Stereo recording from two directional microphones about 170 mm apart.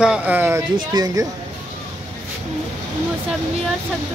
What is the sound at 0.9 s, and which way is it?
Speech, 25° right (ahead or behind).